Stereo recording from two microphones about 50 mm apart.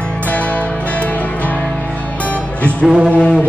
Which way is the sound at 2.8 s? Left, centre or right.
Centre.